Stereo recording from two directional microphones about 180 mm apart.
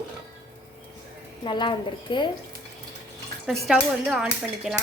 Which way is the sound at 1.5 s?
25° left (ahead or behind).